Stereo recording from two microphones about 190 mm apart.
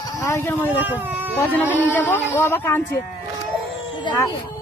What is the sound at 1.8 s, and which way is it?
Speech, 10° left (ahead or behind).